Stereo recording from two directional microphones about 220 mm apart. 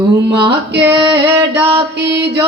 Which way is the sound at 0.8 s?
20° right (ahead or behind).